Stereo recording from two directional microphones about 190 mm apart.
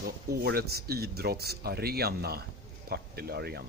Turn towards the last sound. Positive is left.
turn(degrees=-60)  # may be behind; listen again after turning